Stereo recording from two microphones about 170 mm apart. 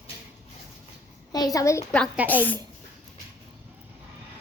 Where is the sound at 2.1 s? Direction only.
10° right (ahead or behind).